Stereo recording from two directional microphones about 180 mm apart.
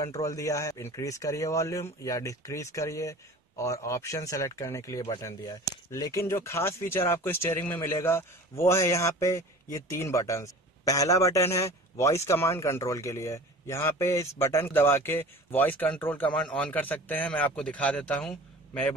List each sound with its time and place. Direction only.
0.0 s speech: 20° left (ahead or behind)